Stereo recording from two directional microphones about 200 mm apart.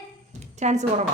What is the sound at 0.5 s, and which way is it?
Speech, 35° right (ahead or behind).